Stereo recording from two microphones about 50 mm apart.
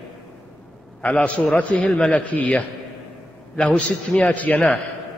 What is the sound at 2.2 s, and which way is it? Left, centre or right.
A man's voice, left.